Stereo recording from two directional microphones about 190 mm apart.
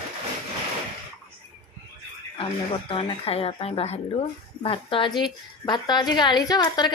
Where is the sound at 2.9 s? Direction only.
30° left (ahead or behind).